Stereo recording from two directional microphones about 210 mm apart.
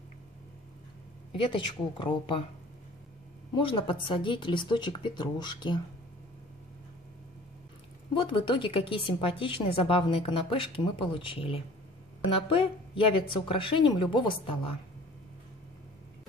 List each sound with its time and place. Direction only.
1.3 s a woman's voice: 25° left (ahead or behind)
3.5 s a woman's voice: 25° left (ahead or behind)
8.1 s a woman's voice: 25° left (ahead or behind)